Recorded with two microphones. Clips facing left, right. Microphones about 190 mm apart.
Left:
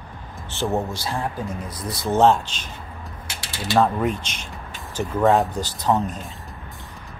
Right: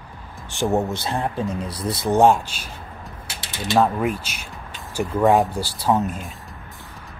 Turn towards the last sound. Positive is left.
turn(degrees=0)  # may be behind; listen again after turning